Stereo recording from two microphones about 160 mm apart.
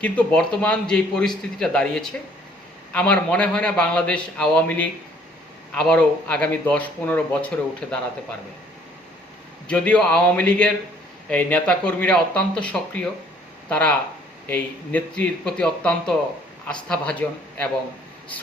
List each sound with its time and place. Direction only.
0.0 s a man's voice: 10° left (ahead or behind)
9.6 s a man's voice: 5° left (ahead or behind)